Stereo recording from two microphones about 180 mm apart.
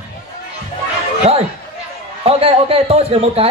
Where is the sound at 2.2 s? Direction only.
30° right (ahead or behind).